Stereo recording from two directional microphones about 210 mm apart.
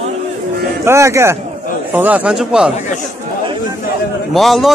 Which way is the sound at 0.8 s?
15° right (ahead or behind).